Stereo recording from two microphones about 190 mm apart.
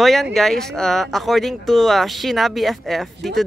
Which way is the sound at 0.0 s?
Centre (ahead or behind).